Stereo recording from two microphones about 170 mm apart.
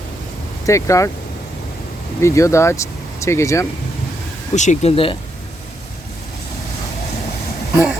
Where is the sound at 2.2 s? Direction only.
15° left (ahead or behind).